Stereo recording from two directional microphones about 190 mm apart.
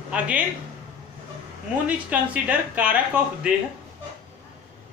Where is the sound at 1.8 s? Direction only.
5° right (ahead or behind).